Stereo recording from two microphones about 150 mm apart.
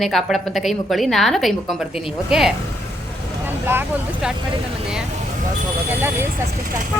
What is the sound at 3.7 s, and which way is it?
Speech, 15° right (ahead or behind).